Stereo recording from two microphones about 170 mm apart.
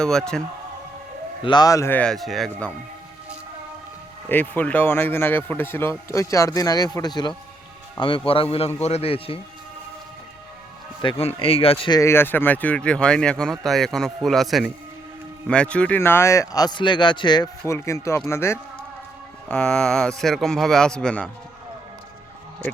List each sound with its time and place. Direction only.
0.0 s speech: 5° left (ahead or behind)
1.5 s speech: 25° left (ahead or behind); by 2.6 s centre (ahead or behind)
4.3 s a man's voice: 10° left (ahead or behind); by 9.4 s 35° left (ahead or behind)
11.0 s a man's voice: 35° left (ahead or behind)
11.9 s speech: 15° left (ahead or behind)